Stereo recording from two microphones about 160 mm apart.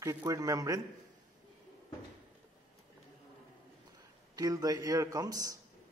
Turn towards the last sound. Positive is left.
turn(degrees=-20)  # may be behind; listen again after turning